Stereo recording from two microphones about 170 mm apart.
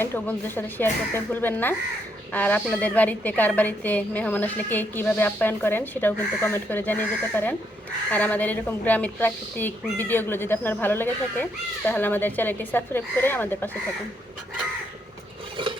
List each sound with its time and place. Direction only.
0.0 s a woman's voice: 10° left (ahead or behind)
15.6 s filing: 30° right (ahead or behind)